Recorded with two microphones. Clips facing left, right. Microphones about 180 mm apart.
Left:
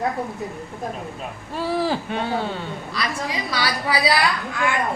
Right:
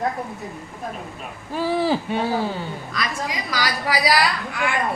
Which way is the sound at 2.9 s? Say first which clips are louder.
Left 1 dB; 30° left (ahead or behind).